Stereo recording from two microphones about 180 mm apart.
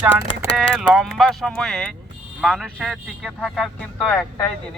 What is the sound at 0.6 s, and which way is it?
A man's voice, centre (ahead or behind).